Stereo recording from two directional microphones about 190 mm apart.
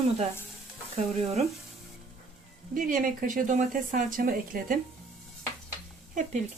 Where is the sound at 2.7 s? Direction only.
45° right (ahead or behind).